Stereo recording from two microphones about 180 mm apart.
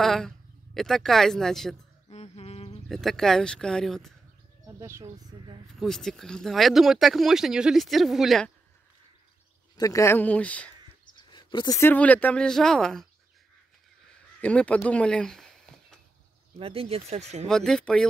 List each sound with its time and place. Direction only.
0.0 s speech: centre (ahead or behind)
2.0 s humming: 35° left (ahead or behind)
2.9 s speech: centre (ahead or behind)
4.7 s speech: 15° right (ahead or behind)
5.8 s speech: centre (ahead or behind)
9.8 s speech: 20° left (ahead or behind)
11.1 s speech: 25° left (ahead or behind); by 13.0 s 5° left (ahead or behind)
14.4 s speech: 5° left (ahead or behind)
16.5 s speech: 30° right (ahead or behind)
17.5 s speech: 5° left (ahead or behind)